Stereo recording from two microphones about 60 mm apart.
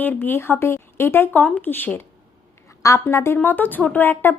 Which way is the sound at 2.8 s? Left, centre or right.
Left.